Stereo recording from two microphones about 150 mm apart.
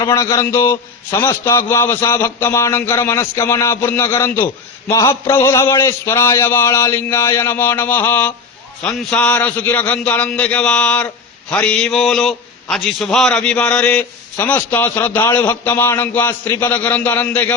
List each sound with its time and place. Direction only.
0.0 s a man's voice: 20° left (ahead or behind)